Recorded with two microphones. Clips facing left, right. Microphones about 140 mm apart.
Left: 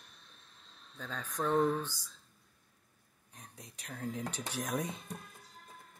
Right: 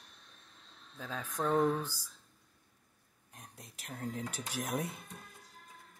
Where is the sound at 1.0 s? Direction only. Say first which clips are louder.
Right 1 dB; 10° right (ahead or behind).